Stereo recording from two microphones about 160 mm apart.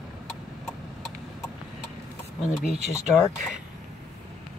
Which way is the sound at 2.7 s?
45° right (ahead or behind).